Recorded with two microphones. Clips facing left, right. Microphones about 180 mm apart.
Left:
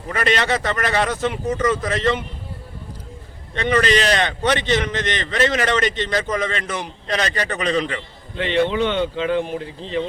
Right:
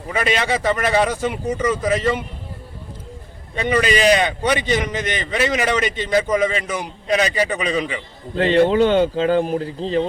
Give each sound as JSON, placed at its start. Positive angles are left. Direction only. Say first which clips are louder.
{"t": 0.1, "sound": "a man's voice", "louder": "even", "side_deg": -5}
{"t": 3.5, "sound": "a man's voice", "louder": "even", "side_deg": -10}
{"t": 8.4, "sound": "speech", "louder": "right 5 dB", "side_deg": -40}